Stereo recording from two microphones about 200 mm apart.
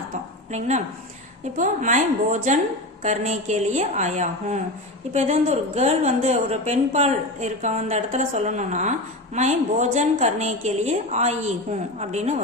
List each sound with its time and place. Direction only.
1.5 s a woman's voice: 40° right (ahead or behind)